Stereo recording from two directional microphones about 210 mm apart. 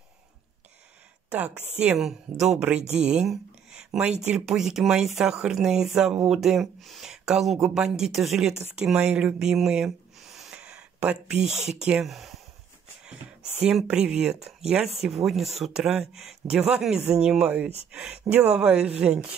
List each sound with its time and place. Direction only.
1.3 s a woman's voice: 5° right (ahead or behind)
2.8 s speech: 30° right (ahead or behind)
3.1 s speech: 5° right (ahead or behind)
13.7 s speech: 5° right (ahead or behind)